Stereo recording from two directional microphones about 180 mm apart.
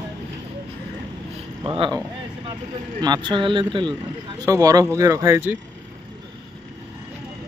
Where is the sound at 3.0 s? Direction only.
25° right (ahead or behind).